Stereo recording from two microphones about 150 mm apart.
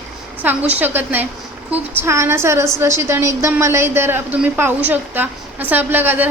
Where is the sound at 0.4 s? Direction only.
10° right (ahead or behind).